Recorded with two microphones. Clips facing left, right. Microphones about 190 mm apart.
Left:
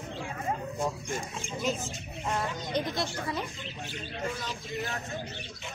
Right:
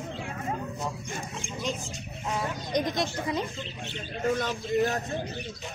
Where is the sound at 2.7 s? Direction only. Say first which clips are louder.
Right 4 dB; 20° right (ahead or behind).